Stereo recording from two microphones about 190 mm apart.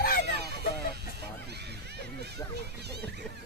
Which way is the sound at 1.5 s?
60° right (ahead or behind).